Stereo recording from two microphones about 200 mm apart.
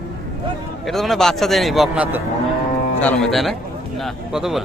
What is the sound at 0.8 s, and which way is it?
A man's voice, centre (ahead or behind).